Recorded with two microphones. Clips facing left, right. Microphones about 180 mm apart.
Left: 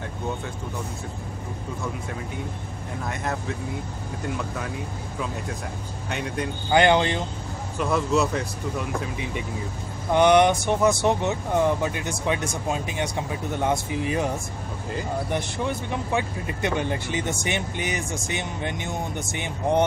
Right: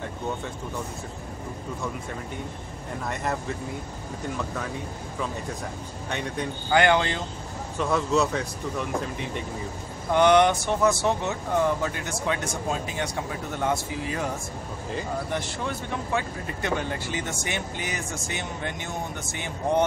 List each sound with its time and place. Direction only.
3.1 s speech: centre (ahead or behind)
6.0 s speech: 5° left (ahead or behind)
6.7 s speech: 20° left (ahead or behind)
7.8 s speech: 5° left (ahead or behind)
10.1 s speech: 15° left (ahead or behind)
15.3 s speech: 15° left (ahead or behind)